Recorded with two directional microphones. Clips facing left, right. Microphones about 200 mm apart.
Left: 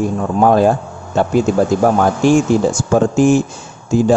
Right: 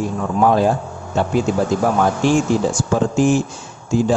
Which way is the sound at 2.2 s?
45° left (ahead or behind).